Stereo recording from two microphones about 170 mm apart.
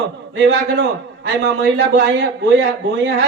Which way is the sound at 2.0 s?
90° right.